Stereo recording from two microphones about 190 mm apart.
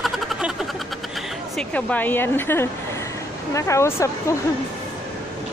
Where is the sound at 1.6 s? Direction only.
5° left (ahead or behind).